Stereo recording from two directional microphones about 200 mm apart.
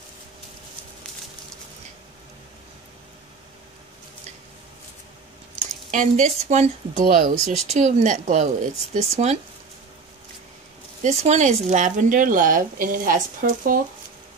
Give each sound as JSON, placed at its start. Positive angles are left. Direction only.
{"t": 5.9, "sound": "speech", "side_deg": -40}
{"t": 11.0, "sound": "speech", "side_deg": -35}